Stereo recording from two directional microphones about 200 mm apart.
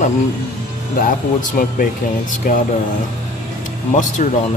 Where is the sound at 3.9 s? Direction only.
35° left (ahead or behind).